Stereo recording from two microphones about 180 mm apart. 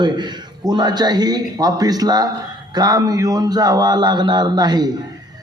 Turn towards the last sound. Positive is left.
turn(degrees=-25)  # may be behind; listen again after turning